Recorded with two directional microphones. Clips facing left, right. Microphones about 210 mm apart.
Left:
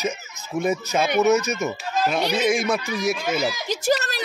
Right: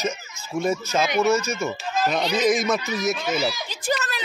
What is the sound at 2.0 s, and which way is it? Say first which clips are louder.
Speech: even; 5° left (ahead or behind).